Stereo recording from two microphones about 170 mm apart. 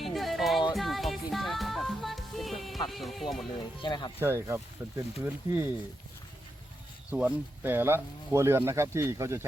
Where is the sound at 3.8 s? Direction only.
25° left (ahead or behind).